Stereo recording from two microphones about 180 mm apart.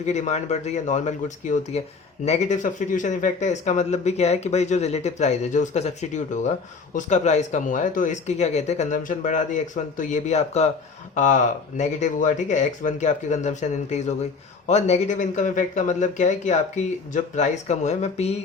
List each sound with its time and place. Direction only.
0.0 s speech: 40° left (ahead or behind)